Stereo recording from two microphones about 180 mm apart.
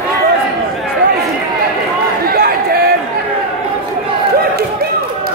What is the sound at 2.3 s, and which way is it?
Chatter, 60° right (ahead or behind).